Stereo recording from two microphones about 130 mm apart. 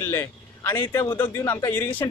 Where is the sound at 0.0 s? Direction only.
20° left (ahead or behind).